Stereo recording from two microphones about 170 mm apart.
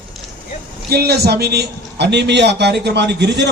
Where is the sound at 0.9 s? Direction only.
70° right (ahead or behind).